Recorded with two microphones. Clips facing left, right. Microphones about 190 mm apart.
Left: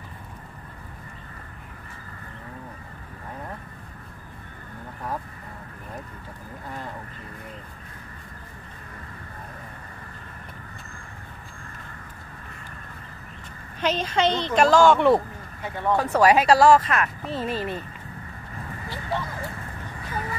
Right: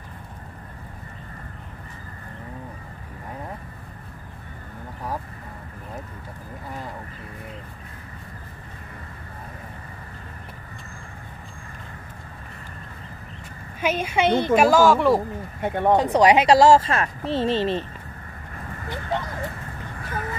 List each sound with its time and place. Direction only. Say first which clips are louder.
13.7 s speech: right 1 dB; 10° right (ahead or behind)
15.6 s speech: right 7 dB; 60° right (ahead or behind)
15.9 s speech: right 2 dB; 20° right (ahead or behind)
18.9 s a sound: right 2 dB; 20° right (ahead or behind)